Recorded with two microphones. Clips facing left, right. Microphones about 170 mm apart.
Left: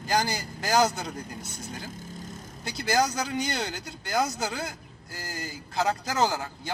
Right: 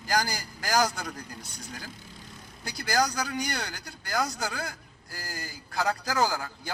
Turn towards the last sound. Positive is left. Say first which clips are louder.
# left 1 dB
turn(degrees=25)  # may be behind; listen again after turning